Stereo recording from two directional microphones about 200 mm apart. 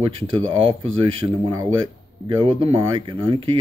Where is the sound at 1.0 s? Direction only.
25° right (ahead or behind).